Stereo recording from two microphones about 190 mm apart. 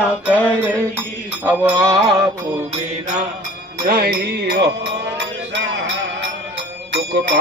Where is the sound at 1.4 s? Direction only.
10° right (ahead or behind).